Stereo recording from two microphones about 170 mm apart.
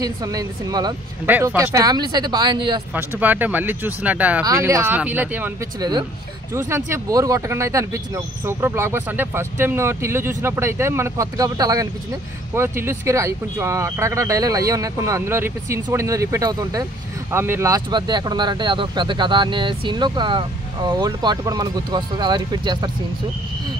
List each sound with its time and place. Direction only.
0.0 s speech: 20° right (ahead or behind)
1.2 s speech: 10° right (ahead or behind); by 2.8 s 25° right (ahead or behind)
2.9 s speech: 10° right (ahead or behind)
5.8 s speech: 25° right (ahead or behind)